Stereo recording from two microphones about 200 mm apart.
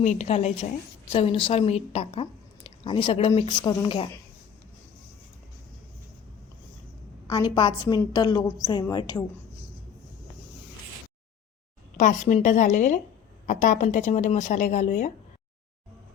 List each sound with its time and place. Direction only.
0.0 s speech: 35° left (ahead or behind)
7.3 s speech: 20° left (ahead or behind)
11.9 s speech: 35° left (ahead or behind)